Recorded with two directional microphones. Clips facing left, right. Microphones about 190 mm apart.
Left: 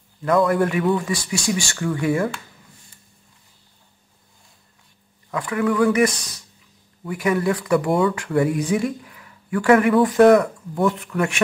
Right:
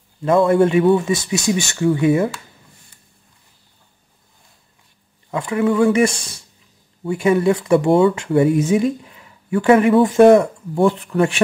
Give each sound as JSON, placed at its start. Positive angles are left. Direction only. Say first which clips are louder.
{"t": 0.2, "sound": "speech", "louder": "right 4 dB", "side_deg": -25}
{"t": 5.3, "sound": "speech", "louder": "right 3 dB", "side_deg": -25}